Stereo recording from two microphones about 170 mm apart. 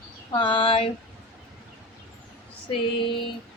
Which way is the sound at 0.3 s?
30° left (ahead or behind).